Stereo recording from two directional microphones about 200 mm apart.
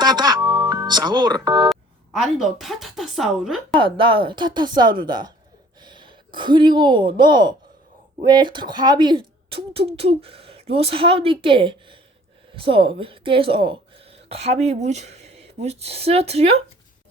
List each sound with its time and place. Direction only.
0.0 s music: 20° right (ahead or behind)
1.7 s a woman's voice: centre (ahead or behind)
3.7 s a woman's voice: 25° right (ahead or behind)